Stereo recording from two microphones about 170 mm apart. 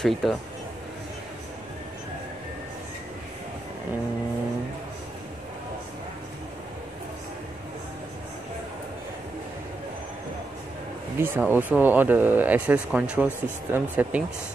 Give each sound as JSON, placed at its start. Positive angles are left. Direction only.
{"t": 0.0, "sound": "speech", "side_deg": 0}
{"t": 11.1, "sound": "speech", "side_deg": -10}